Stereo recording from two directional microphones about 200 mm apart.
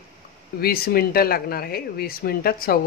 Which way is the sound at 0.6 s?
50° left (ahead or behind).